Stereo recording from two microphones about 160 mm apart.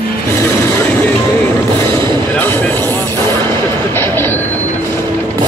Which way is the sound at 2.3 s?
10° left (ahead or behind).